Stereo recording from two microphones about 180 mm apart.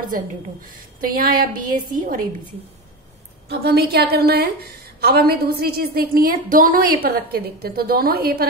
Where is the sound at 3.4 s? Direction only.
65° right (ahead or behind).